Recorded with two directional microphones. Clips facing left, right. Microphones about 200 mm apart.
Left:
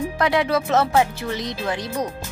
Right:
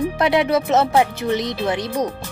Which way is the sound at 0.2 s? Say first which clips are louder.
Right 2 dB; 20° right (ahead or behind).